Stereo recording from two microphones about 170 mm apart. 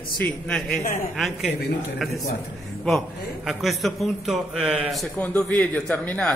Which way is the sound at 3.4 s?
Centre (ahead or behind).